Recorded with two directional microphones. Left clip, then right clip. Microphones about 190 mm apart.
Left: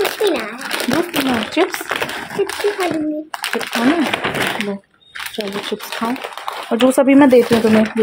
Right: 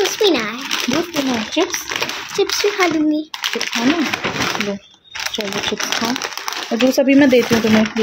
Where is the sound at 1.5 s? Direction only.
10° left (ahead or behind).